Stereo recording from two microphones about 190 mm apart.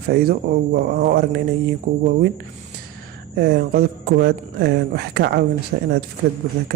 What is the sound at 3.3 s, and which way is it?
Speech, 55° right (ahead or behind).